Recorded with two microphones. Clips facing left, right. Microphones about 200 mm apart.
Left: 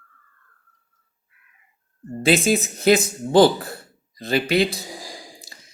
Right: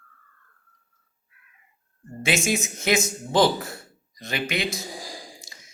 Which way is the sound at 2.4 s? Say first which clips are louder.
Left 7 dB; 35° left (ahead or behind).